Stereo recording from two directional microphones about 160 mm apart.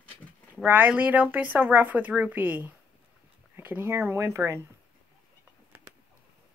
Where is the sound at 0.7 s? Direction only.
10° right (ahead or behind).